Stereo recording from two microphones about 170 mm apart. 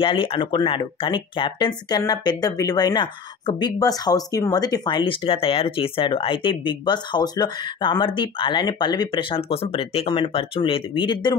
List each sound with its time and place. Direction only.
0.0 s speech: 30° left (ahead or behind)